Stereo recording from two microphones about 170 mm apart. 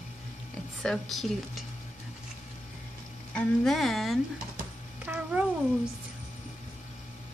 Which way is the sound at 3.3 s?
Centre (ahead or behind).